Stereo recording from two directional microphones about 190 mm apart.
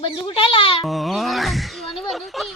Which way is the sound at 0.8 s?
Centre (ahead or behind).